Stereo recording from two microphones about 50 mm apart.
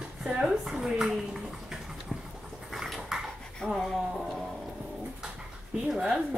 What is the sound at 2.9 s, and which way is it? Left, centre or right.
Dog, centre.